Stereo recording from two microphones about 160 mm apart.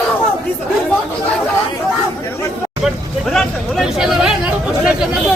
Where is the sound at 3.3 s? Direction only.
Centre (ahead or behind).